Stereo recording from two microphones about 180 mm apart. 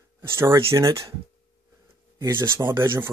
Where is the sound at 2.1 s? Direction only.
15° right (ahead or behind).